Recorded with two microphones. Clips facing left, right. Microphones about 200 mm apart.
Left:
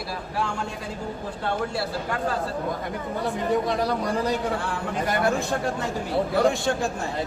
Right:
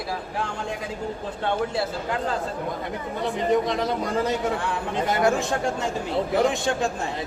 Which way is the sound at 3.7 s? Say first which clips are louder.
Even; 20° right (ahead or behind).